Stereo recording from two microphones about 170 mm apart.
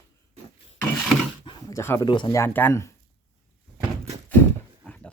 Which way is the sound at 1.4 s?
30° left (ahead or behind).